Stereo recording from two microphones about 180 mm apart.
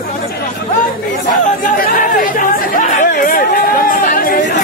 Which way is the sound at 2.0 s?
50° left (ahead or behind).